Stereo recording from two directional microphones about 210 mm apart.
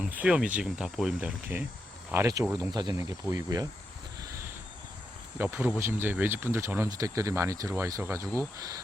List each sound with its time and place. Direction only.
0.0 s speech: 5° right (ahead or behind)
5.4 s speech: 10° right (ahead or behind)